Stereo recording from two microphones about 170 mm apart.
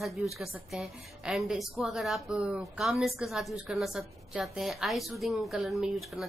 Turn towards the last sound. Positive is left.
turn(degrees=0)  # may be behind; listen again after turning